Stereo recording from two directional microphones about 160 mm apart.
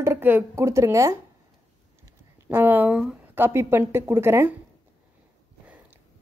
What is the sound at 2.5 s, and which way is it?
A woman's voice, 10° right (ahead or behind).